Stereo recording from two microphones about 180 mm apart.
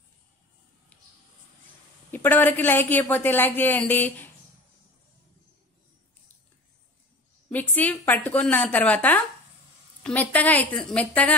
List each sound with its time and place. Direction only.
2.0 s a woman's voice: 10° left (ahead or behind)
7.5 s a sound: 10° left (ahead or behind)
8.1 s a woman's voice: 10° left (ahead or behind)